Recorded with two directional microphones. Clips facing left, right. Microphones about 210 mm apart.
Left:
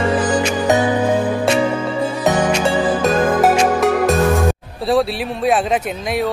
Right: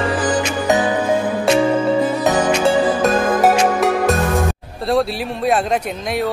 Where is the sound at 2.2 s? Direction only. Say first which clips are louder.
Right 1 dB; centre (ahead or behind).